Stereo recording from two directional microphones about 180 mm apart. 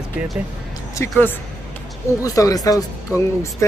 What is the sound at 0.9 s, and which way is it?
Speech, 10° left (ahead or behind).